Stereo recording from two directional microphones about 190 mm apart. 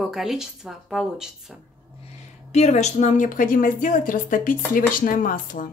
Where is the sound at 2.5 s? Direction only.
35° left (ahead or behind).